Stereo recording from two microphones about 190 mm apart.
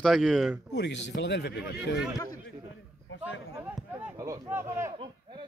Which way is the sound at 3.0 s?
80° left.